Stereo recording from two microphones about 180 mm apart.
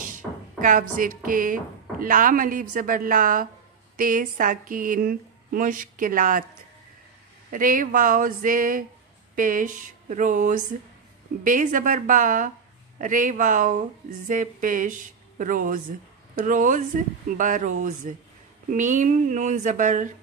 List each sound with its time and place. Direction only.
0.0 s speech: 45° right (ahead or behind)
7.5 s speech: 50° right (ahead or behind)